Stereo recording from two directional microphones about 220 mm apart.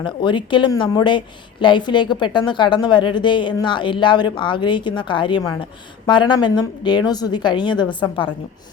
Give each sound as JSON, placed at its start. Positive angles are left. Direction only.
{"t": 0.0, "sound": "a woman's voice", "side_deg": 20}